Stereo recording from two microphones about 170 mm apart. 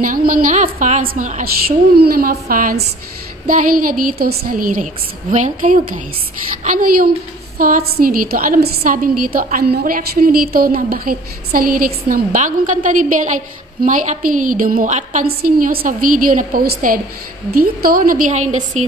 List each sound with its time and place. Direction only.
0.0 s a woman's voice: 55° right (ahead or behind)
2.0 s a woman's voice: 60° right (ahead or behind); by 15.2 s 45° right (ahead or behind)
15.2 s a woman's voice: 60° right (ahead or behind)